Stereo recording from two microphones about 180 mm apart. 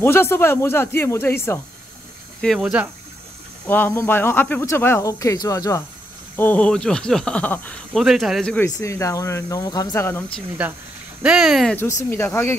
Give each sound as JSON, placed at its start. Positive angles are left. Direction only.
{"t": 0.0, "sound": "speech", "side_deg": 15}
{"t": 2.4, "sound": "speech", "side_deg": 0}
{"t": 3.6, "sound": "speech", "side_deg": 10}
{"t": 8.0, "sound": "speech", "side_deg": 0}
{"t": 8.6, "sound": "speech", "side_deg": 15}
{"t": 10.6, "sound": "speech", "side_deg": -10}
{"t": 11.7, "sound": "speech", "side_deg": 15}